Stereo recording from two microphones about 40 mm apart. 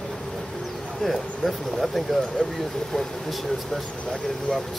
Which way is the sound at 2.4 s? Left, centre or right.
Left.